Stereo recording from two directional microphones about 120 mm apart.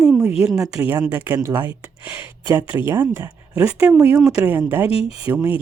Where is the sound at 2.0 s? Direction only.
15° right (ahead or behind).